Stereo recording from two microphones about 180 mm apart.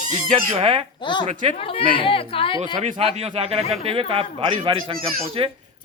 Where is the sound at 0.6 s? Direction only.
30° right (ahead or behind).